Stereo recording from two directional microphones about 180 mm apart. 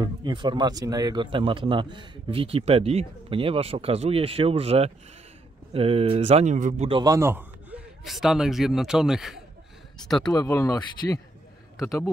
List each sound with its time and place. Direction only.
0.0 s speech: 25° right (ahead or behind); by 6.9 s 45° right (ahead or behind)
6.9 s a man's voice: 20° right (ahead or behind); by 10.3 s centre (ahead or behind)
10.3 s speech: 15° left (ahead or behind)